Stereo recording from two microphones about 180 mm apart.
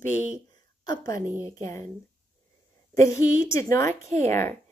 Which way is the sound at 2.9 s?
15° left (ahead or behind).